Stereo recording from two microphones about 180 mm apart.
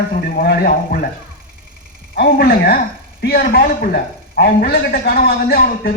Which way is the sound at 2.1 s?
60° left (ahead or behind).